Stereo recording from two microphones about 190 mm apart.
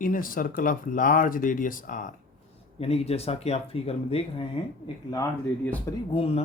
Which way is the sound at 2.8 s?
30° left (ahead or behind).